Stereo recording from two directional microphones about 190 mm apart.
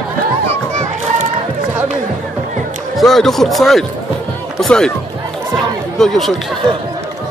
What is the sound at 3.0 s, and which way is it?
Speech, centre (ahead or behind).